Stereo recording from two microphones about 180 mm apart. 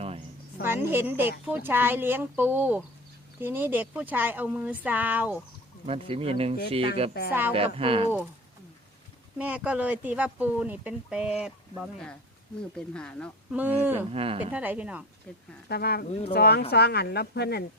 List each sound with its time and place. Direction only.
0.6 s speech: 10° right (ahead or behind)
5.8 s speech: 30° right (ahead or behind)
7.3 s speech: 10° right (ahead or behind)
7.5 s speech: 30° right (ahead or behind)
9.4 s speech: 10° right (ahead or behind)
13.5 s speech: 10° right (ahead or behind)
14.1 s speech: 35° right (ahead or behind)
14.5 s speech: 10° right (ahead or behind)
15.7 s a woman's voice: 60° left (ahead or behind)
16.0 s speech: 35° left (ahead or behind)
16.3 s a woman's voice: 65° left (ahead or behind)